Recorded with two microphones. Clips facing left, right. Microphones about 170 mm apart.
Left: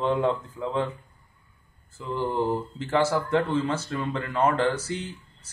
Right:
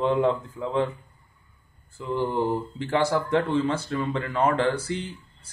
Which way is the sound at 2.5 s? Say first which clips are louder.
Even; 5° left (ahead or behind).